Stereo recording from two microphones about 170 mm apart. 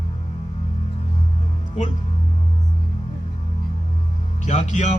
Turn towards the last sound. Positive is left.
turn(degrees=45)  # may be behind; listen again after turning